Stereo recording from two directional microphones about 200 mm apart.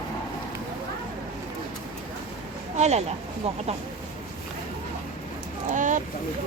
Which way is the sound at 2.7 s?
35° right (ahead or behind).